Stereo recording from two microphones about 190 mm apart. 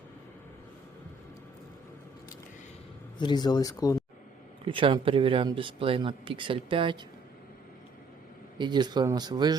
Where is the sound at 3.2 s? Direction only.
25° left (ahead or behind).